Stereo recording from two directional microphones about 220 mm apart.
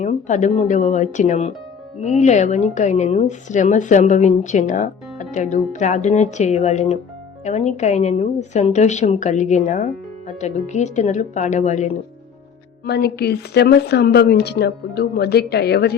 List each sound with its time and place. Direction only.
0.0 s a woman's voice: 35° left (ahead or behind)
12.8 s a woman's voice: 45° left (ahead or behind)